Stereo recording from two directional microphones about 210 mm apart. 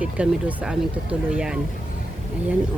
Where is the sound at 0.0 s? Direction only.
5° right (ahead or behind).